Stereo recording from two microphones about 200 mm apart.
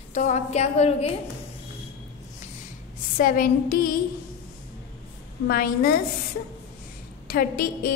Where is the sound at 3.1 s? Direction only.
45° left (ahead or behind).